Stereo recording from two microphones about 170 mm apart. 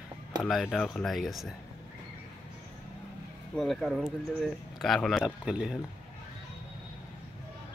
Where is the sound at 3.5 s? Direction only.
Centre (ahead or behind).